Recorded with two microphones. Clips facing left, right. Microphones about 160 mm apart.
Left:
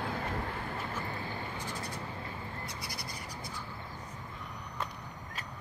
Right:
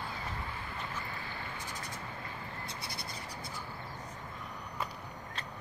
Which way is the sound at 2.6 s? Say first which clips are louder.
Left 1 dB; 25° right (ahead or behind).